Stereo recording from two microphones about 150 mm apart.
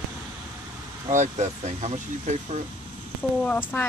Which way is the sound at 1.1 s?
50° right (ahead or behind).